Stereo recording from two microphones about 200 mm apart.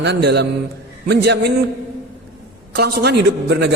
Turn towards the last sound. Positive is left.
turn(degrees=-60)  # may be behind; listen again after turning